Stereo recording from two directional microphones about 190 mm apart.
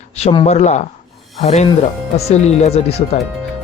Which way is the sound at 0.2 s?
35° left (ahead or behind).